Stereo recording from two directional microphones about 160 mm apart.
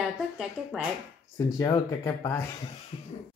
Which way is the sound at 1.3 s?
20° left (ahead or behind).